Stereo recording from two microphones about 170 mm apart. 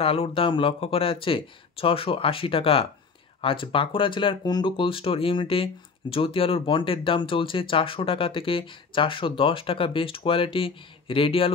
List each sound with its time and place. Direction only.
0.0 s speech: 35° left (ahead or behind)